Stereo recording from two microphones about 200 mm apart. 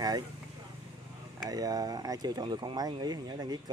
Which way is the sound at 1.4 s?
20° right (ahead or behind).